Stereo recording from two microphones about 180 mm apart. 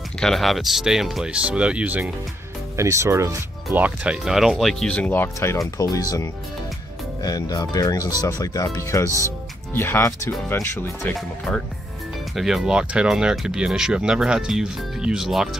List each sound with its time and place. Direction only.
0.2 s speech: centre (ahead or behind); by 6.2 s 20° left (ahead or behind)
7.2 s speech: 20° left (ahead or behind)
11.1 s speech: centre (ahead or behind)